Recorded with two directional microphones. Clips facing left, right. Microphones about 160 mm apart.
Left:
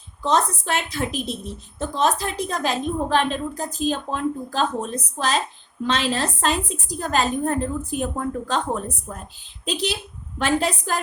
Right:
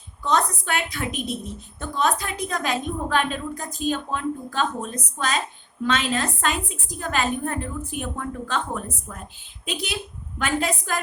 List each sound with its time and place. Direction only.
0.2 s a woman's voice: 30° left (ahead or behind)